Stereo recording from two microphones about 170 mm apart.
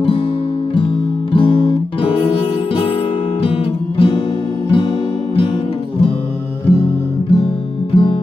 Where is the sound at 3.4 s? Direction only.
35° left (ahead or behind).